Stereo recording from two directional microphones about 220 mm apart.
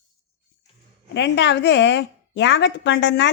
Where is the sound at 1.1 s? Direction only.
55° left (ahead or behind).